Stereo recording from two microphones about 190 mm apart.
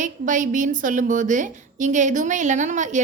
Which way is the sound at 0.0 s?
45° right (ahead or behind).